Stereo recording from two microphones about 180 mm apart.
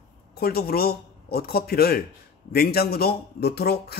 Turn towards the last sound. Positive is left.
turn(degrees=60)  # may be behind; listen again after turning